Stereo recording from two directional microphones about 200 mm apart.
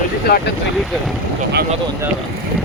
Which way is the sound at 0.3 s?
50° left (ahead or behind).